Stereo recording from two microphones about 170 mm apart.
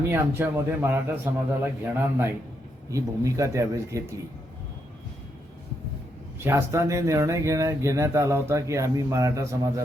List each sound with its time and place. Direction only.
0.1 s speech: 15° right (ahead or behind)
6.4 s speech: 15° right (ahead or behind)